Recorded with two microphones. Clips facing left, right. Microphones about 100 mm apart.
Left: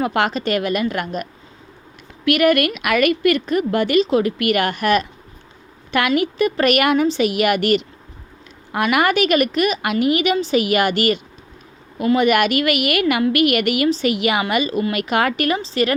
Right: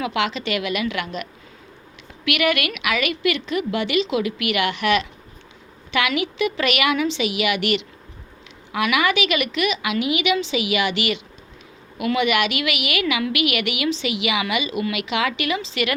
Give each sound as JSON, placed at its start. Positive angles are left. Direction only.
{"t": 0.0, "sound": "a woman's voice", "side_deg": 45}